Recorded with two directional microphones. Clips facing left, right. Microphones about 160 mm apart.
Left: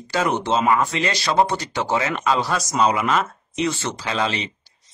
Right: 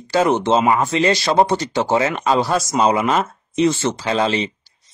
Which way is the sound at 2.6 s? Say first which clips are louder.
Right 3 dB; 45° right (ahead or behind).